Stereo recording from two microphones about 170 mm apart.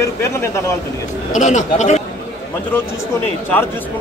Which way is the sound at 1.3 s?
45° left (ahead or behind).